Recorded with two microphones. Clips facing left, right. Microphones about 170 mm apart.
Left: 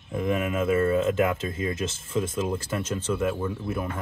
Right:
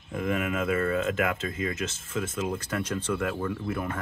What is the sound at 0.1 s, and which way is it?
Speech, 20° left (ahead or behind).